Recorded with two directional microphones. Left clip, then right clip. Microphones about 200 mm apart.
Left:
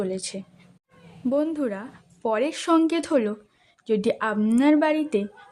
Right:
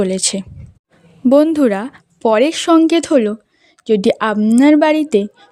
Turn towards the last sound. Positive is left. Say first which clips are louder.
# right 10 dB
turn(degrees=-45)  # may be behind; listen again after turning